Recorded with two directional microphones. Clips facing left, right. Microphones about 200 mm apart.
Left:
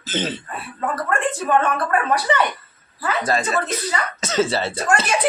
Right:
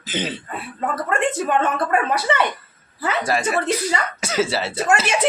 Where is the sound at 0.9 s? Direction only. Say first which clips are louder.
Right 1 dB; 20° right (ahead or behind).